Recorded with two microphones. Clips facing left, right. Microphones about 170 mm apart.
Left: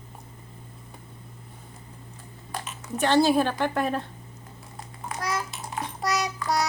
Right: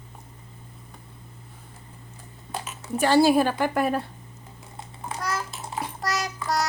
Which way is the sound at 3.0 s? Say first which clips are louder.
Right 2 dB; 10° right (ahead or behind).